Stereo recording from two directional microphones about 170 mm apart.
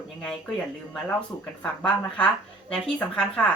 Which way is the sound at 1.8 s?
5° left (ahead or behind).